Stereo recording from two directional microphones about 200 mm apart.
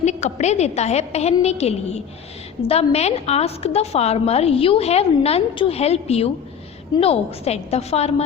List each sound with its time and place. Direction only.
0.0 s a woman's voice: 35° left (ahead or behind)